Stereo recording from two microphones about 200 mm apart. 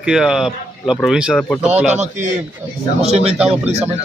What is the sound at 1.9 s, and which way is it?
Speech, 35° right (ahead or behind).